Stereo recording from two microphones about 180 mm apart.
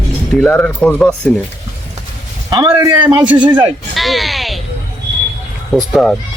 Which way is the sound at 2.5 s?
25° right (ahead or behind).